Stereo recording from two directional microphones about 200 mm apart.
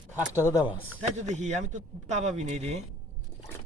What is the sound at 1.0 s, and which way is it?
Speech, 35° right (ahead or behind).